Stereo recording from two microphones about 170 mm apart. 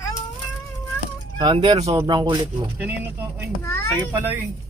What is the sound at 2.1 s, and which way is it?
Speech, 30° right (ahead or behind).